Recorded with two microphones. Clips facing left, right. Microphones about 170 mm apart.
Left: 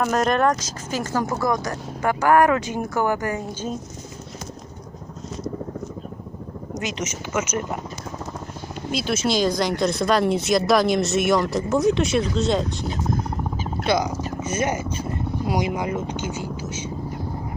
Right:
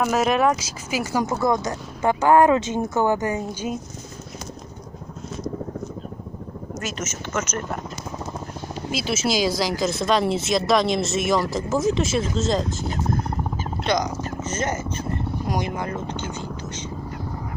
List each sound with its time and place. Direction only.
0.0 s speech: 5° right (ahead or behind)
1.2 s speech: 20° right (ahead or behind)
6.7 s speech: 15° left (ahead or behind)
8.9 s speech: 5° right (ahead or behind)
13.8 s speech: 10° left (ahead or behind)